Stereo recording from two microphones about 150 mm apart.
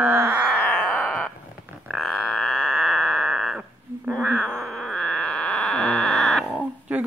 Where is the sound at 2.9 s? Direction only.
Centre (ahead or behind).